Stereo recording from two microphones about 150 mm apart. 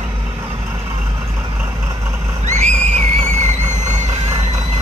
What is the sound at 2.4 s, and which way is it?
Neigh, 55° right (ahead or behind).